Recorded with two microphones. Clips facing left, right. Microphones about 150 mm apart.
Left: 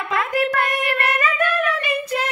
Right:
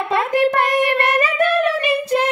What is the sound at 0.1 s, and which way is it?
Singing, 30° right (ahead or behind).